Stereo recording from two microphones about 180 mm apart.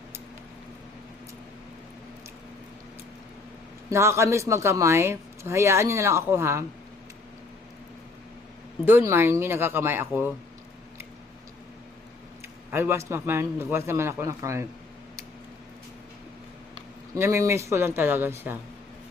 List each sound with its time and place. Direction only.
3.8 s speech: 15° right (ahead or behind)
8.8 s speech: 15° right (ahead or behind)
12.7 s speech: 15° right (ahead or behind)
17.2 s speech: 15° right (ahead or behind)